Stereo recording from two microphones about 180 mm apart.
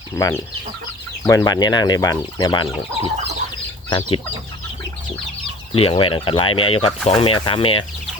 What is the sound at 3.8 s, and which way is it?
Speech, 30° left (ahead or behind).